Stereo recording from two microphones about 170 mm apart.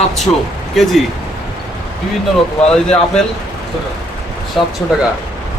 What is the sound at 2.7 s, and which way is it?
Speech, 5° left (ahead or behind).